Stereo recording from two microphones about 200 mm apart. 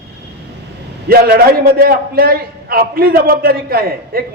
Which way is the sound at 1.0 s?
50° right (ahead or behind).